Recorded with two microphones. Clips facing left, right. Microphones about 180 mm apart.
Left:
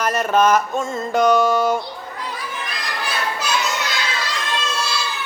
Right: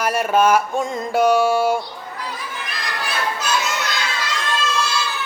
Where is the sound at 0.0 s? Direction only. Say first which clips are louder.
Even; 10° right (ahead or behind).